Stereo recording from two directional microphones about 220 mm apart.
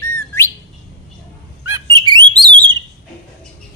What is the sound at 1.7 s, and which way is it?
Bird, 15° right (ahead or behind).